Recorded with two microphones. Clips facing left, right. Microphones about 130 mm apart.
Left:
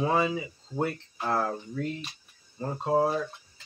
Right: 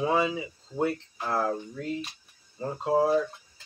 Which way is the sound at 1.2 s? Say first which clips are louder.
Left 2 dB; centre (ahead or behind).